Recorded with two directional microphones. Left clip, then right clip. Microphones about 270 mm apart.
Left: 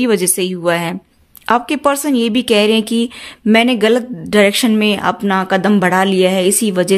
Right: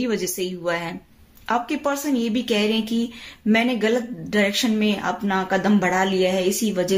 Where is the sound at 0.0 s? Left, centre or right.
Left.